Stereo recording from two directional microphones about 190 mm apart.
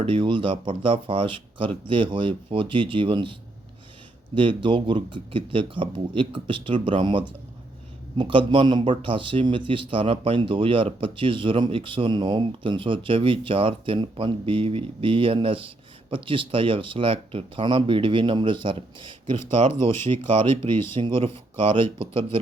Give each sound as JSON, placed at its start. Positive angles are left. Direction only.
{"t": 0.0, "sound": "speech", "side_deg": -25}
{"t": 4.4, "sound": "speech", "side_deg": -25}